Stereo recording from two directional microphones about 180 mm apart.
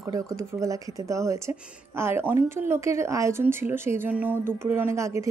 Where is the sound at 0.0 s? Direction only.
15° right (ahead or behind).